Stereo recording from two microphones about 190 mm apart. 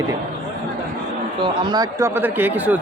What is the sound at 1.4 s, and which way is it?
Speech, 20° right (ahead or behind).